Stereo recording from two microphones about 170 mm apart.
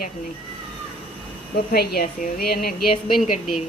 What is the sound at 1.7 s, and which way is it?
A woman's voice, 60° left (ahead or behind).